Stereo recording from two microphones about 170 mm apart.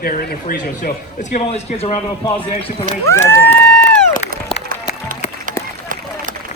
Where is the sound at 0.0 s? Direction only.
60° left (ahead or behind); by 2.7 s 35° left (ahead or behind).